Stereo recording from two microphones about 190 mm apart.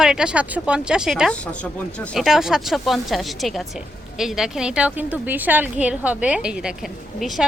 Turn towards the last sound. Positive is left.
turn(degrees=0)  # may be behind; listen again after turning